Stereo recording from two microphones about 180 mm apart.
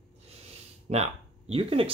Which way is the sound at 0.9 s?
35° right (ahead or behind).